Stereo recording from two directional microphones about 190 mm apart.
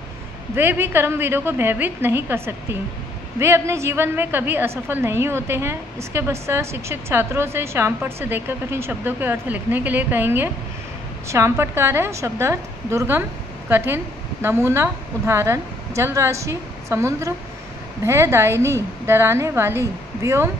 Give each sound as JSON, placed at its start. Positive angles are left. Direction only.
{"t": 0.6, "sound": "a woman's voice", "side_deg": -10}